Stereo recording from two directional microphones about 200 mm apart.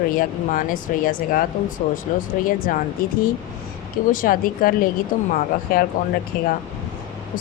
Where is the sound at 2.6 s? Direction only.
45° left (ahead or behind).